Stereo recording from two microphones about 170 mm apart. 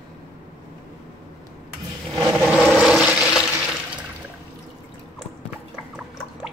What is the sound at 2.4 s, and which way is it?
Toilet flush, centre (ahead or behind).